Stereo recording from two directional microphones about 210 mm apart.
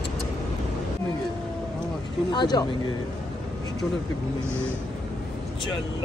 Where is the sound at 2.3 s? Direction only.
20° left (ahead or behind).